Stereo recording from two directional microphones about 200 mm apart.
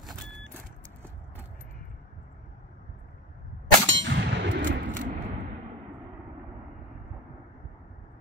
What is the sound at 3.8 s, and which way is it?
Clang, 65° right (ahead or behind).